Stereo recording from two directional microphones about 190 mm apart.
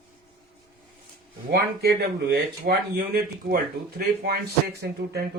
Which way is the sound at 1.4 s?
60° right (ahead or behind).